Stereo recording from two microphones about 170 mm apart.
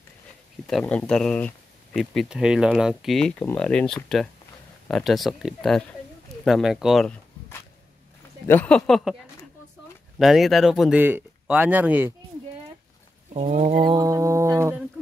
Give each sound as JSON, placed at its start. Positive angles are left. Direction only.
{"t": 0.7, "sound": "speech", "side_deg": 5}
{"t": 8.5, "sound": "speech", "side_deg": 10}
{"t": 10.1, "sound": "speech", "side_deg": 0}
{"t": 13.3, "sound": "speech", "side_deg": -45}
{"t": 13.8, "sound": "speech", "side_deg": -20}